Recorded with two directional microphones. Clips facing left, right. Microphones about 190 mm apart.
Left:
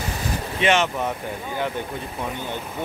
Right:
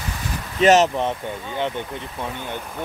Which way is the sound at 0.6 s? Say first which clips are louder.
Right 6 dB; 40° right (ahead or behind).